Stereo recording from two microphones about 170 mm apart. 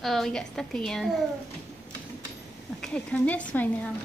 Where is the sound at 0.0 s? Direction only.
Centre (ahead or behind).